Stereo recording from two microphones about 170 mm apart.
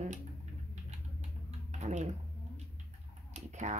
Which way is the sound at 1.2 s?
40° right (ahead or behind).